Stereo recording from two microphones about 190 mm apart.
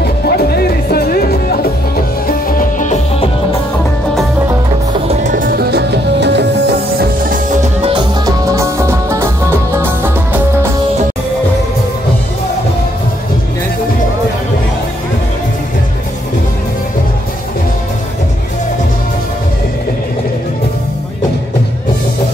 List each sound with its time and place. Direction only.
0.0 s music: 55° left (ahead or behind); by 3.3 s 40° left (ahead or behind)
5.0 s music: 40° right (ahead or behind); by 7.3 s 55° right (ahead or behind)
7.6 s music: 30° right (ahead or behind)
8.3 s music: 15° right (ahead or behind)